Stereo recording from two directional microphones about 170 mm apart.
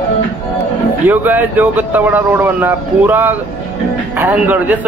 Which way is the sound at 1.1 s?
10° right (ahead or behind).